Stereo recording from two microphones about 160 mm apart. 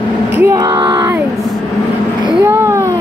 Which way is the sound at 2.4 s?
15° right (ahead or behind).